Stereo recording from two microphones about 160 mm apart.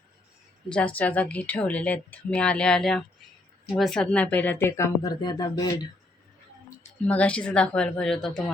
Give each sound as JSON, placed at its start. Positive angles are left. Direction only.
{"t": 0.7, "sound": "speech", "side_deg": 10}
{"t": 5.2, "sound": "speech", "side_deg": 25}
{"t": 6.8, "sound": "speech", "side_deg": 10}